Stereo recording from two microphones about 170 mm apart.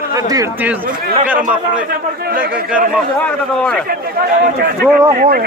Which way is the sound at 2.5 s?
5° right (ahead or behind).